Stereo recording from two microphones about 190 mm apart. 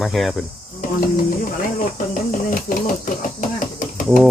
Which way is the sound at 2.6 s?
50° left (ahead or behind).